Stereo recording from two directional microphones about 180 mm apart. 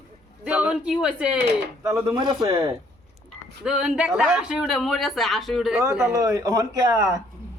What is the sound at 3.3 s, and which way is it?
Speech, 5° right (ahead or behind).